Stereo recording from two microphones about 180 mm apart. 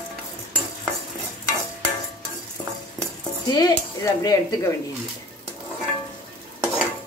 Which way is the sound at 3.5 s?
20° left (ahead or behind).